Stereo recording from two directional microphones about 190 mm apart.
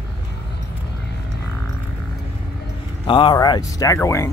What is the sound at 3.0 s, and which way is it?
Speech, 25° left (ahead or behind).